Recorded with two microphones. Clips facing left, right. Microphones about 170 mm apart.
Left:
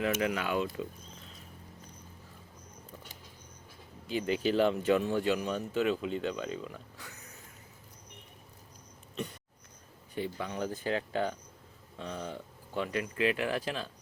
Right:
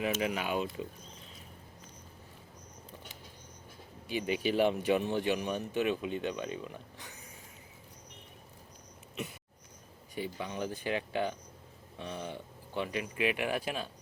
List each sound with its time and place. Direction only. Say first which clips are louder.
0.0 s speech: left 2 dB; 20° right (ahead or behind)
4.1 s speech: left 2 dB; 15° right (ahead or behind)
10.2 s speech: left 2 dB; 15° right (ahead or behind)